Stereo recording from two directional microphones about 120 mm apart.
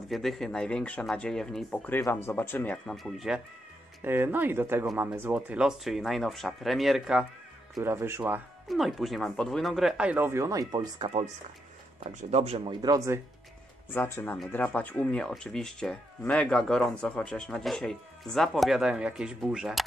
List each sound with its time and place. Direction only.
0.1 s speech: centre (ahead or behind)
2.0 s speech: 20° left (ahead or behind)
3.0 s speech: centre (ahead or behind)
4.0 s speech: 15° right (ahead or behind)
7.8 s speech: 20° right (ahead or behind)
8.6 s speech: centre (ahead or behind); by 11.1 s 30° right (ahead or behind)
12.0 s speech: 65° right (ahead or behind)
12.6 s speech: 30° right (ahead or behind)
13.9 s speech: 20° left (ahead or behind); by 19.8 s 5° right (ahead or behind)